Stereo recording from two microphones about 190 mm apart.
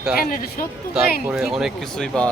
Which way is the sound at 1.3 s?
Centre (ahead or behind).